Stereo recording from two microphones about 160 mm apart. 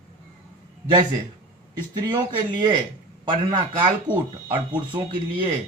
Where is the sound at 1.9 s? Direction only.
30° right (ahead or behind).